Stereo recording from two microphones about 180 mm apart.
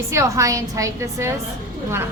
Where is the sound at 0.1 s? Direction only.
15° right (ahead or behind).